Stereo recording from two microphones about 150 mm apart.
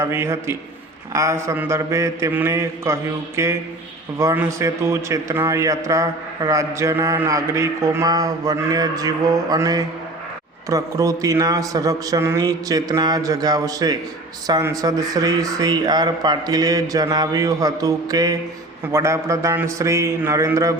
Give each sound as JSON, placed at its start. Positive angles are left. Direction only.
{"t": 0.0, "sound": "a man's voice", "side_deg": -20}